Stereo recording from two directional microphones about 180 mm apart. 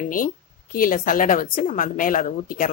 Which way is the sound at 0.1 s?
50° left (ahead or behind).